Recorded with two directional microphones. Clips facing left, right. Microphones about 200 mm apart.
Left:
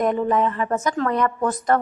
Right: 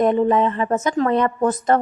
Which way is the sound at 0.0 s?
25° right (ahead or behind).